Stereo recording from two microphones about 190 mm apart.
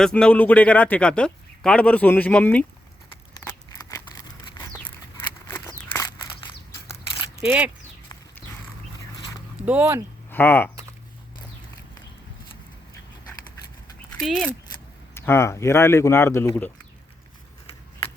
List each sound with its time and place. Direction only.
0.0 s speech: 5° left (ahead or behind)
3.4 s a sound: 15° left (ahead or behind)
7.4 s speech: 5° right (ahead or behind)
9.6 s speech: 5° right (ahead or behind)
10.3 s speech: 10° left (ahead or behind)
14.2 s speech: centre (ahead or behind)
15.1 s speech: 15° left (ahead or behind)